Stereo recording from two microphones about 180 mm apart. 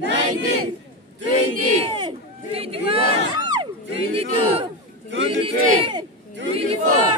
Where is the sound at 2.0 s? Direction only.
30° right (ahead or behind).